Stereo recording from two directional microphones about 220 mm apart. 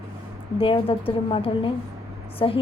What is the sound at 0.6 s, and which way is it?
A woman's voice, 25° left (ahead or behind).